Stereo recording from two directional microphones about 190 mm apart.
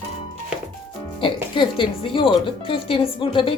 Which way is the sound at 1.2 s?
25° left (ahead or behind).